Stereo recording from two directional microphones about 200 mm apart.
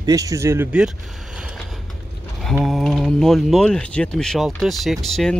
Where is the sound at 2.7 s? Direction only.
Centre (ahead or behind).